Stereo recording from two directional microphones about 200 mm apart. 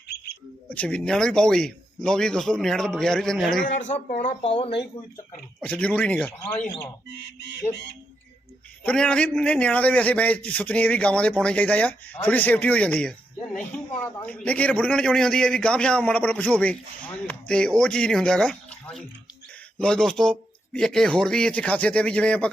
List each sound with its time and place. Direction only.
0.7 s a man's voice: 5° left (ahead or behind)
3.6 s speech: 40° left (ahead or behind)
5.5 s a man's voice: 5° left (ahead or behind)
8.8 s a man's voice: 5° left (ahead or behind)